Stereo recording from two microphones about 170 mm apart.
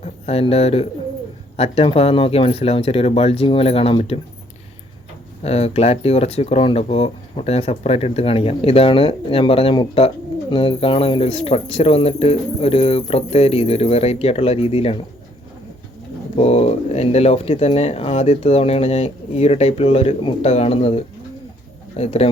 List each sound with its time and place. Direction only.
0.0 s a man's voice: 35° left (ahead or behind)
5.4 s speech: 40° left (ahead or behind)
16.3 s speech: 40° left (ahead or behind)